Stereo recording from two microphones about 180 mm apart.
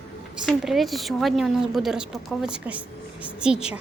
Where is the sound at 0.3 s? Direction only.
Centre (ahead or behind).